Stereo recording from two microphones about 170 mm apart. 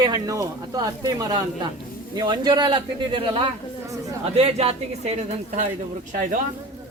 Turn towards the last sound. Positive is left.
turn(degrees=-50)  # may be behind; listen again after turning